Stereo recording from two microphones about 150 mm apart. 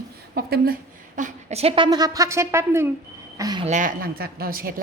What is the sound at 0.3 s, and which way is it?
A woman's voice, 85° right.